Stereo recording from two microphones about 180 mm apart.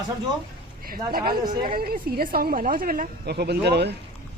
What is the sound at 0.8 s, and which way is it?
A woman's voice, 55° right (ahead or behind).